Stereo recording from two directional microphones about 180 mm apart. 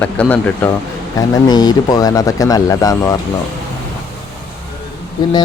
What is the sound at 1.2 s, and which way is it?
Speech, 20° left (ahead or behind).